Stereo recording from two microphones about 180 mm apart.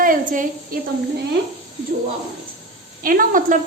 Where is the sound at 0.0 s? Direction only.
50° right (ahead or behind).